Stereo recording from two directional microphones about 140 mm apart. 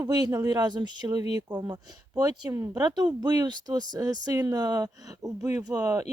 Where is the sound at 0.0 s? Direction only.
25° right (ahead or behind).